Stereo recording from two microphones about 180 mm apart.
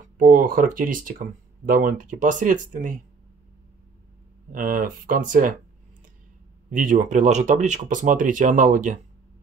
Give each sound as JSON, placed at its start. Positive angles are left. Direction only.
{"t": 0.2, "sound": "speech", "side_deg": -50}
{"t": 4.5, "sound": "speech", "side_deg": -50}
{"t": 6.7, "sound": "speech", "side_deg": -45}